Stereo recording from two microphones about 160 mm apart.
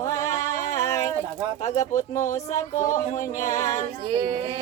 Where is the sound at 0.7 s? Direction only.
20° left (ahead or behind).